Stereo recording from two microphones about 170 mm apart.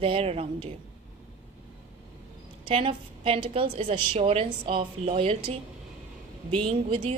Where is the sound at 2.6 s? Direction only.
35° right (ahead or behind).